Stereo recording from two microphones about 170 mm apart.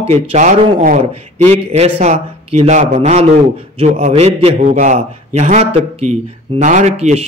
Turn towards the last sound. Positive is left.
turn(degrees=-40)  # may be behind; listen again after turning